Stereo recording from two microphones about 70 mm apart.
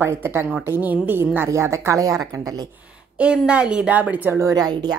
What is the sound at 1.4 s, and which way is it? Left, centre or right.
Speech, right.